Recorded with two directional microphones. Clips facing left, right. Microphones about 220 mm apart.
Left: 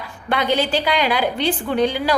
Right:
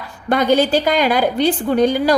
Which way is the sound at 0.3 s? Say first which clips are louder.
Right 5 dB; 45° right (ahead or behind).